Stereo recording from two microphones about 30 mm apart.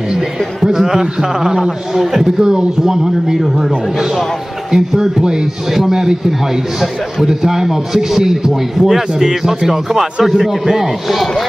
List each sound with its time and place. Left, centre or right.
0.7 s a man's voice: centre
2.4 s speech: right
4.6 s a man's voice: centre
5.2 s speech: right
5.7 s a man's voice: centre